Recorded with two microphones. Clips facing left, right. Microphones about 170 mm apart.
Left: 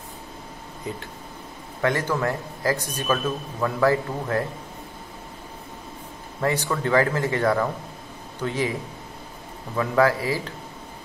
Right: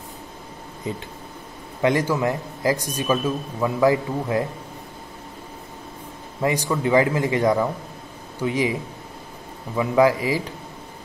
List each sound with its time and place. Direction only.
1.8 s a man's voice: 15° right (ahead or behind)
6.4 s a man's voice: 10° right (ahead or behind)
9.8 s a man's voice: 15° right (ahead or behind)